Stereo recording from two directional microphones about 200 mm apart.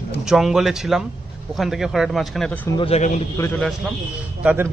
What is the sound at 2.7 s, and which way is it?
Speech, 30° left (ahead or behind).